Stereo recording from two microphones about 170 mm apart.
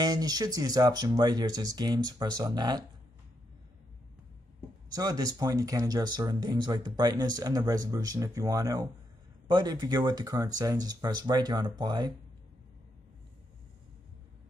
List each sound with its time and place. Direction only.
0.0 s speech: 20° right (ahead or behind)
4.9 s speech: 20° right (ahead or behind)